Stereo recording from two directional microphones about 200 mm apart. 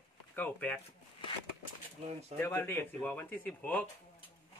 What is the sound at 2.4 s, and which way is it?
A man's voice, 10° left (ahead or behind).